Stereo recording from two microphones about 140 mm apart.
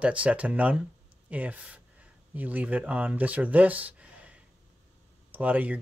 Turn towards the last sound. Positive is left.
turn(degrees=-10)  # may be behind; listen again after turning